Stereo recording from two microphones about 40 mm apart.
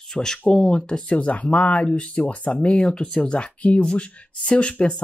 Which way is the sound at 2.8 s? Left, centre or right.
Centre.